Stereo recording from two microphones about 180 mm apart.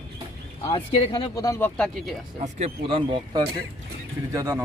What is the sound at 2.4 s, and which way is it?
Speech, 35° right (ahead or behind).